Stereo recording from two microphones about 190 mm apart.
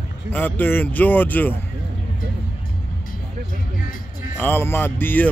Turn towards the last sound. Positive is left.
turn(degrees=10)  # may be behind; listen again after turning